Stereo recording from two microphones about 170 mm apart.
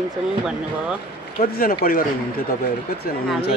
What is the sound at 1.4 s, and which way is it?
A man's voice, 60° left (ahead or behind).